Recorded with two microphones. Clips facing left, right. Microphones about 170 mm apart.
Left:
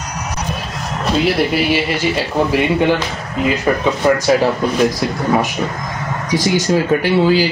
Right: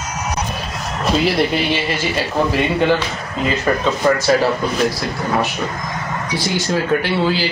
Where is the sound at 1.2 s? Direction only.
5° left (ahead or behind).